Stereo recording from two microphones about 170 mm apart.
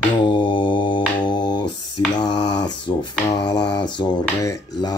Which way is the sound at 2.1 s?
25° left (ahead or behind).